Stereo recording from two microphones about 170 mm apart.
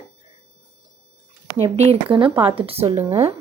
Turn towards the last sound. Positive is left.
turn(degrees=-15)  # may be behind; listen again after turning